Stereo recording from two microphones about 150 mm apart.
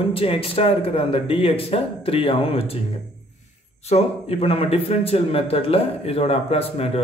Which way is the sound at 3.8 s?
45° left (ahead or behind).